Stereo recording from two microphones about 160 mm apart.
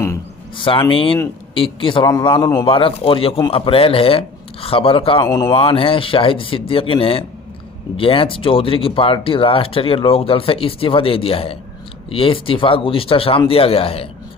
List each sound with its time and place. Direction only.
0.6 s speech: 35° left (ahead or behind)
5.2 s speech: 20° left (ahead or behind)
5.5 s speech: 35° left (ahead or behind)